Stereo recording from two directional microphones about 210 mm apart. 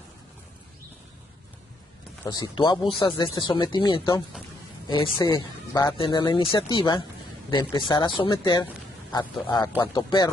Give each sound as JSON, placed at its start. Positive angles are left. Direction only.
{"t": 2.2, "sound": "speech", "side_deg": 20}
{"t": 9.8, "sound": "speech", "side_deg": 20}